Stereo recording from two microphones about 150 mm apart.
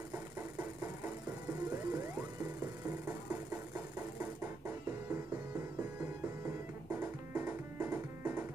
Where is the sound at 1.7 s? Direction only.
20° right (ahead or behind).